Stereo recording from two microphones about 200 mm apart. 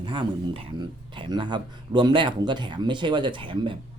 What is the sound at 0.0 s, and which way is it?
Speech, 25° right (ahead or behind).